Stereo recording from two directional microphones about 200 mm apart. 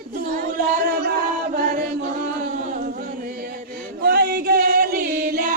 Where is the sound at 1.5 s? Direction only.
45° right (ahead or behind).